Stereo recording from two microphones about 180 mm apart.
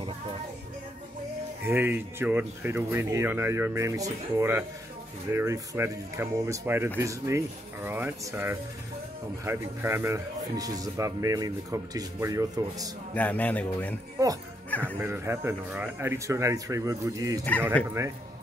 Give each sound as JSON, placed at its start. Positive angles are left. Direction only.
{"t": 1.6, "sound": "speech", "side_deg": -10}
{"t": 13.1, "sound": "a man's voice", "side_deg": 10}
{"t": 15.0, "sound": "speech", "side_deg": -15}